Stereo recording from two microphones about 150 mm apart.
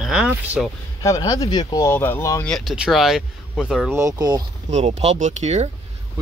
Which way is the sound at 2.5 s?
Centre (ahead or behind).